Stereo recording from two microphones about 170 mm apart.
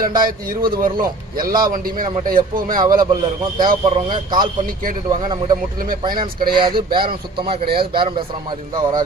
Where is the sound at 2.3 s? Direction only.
55° right (ahead or behind).